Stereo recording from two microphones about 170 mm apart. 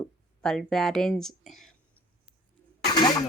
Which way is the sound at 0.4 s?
5° left (ahead or behind).